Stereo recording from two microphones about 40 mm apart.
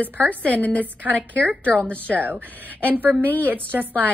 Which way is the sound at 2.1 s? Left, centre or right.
Right.